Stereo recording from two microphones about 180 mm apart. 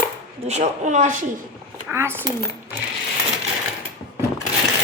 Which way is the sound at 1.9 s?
15° right (ahead or behind).